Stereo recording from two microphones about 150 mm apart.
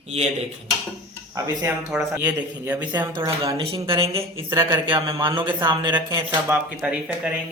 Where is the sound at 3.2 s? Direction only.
20° right (ahead or behind).